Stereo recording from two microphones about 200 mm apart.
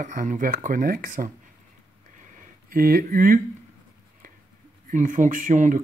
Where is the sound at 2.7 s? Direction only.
45° right (ahead or behind).